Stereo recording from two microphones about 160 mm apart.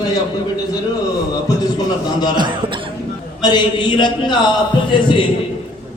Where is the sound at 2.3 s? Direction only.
30° right (ahead or behind).